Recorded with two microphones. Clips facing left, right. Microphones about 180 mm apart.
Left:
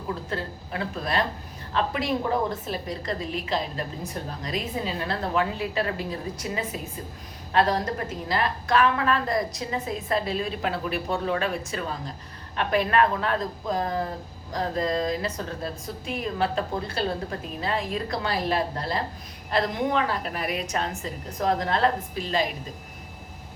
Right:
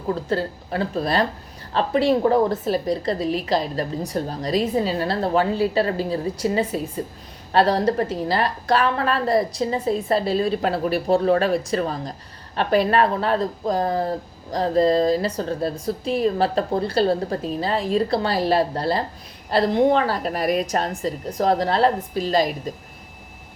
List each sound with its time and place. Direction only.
0.3 s a woman's voice: 35° right (ahead or behind)